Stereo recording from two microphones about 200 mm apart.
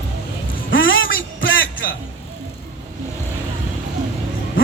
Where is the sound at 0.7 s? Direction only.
70° left (ahead or behind).